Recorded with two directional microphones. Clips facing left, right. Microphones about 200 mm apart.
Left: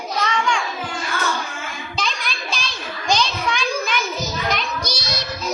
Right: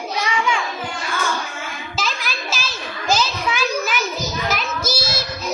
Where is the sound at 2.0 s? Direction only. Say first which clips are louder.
Right 1 dB; 5° right (ahead or behind).